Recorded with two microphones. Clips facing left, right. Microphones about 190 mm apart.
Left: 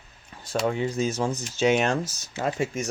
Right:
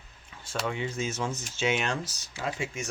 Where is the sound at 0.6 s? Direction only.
40° left (ahead or behind).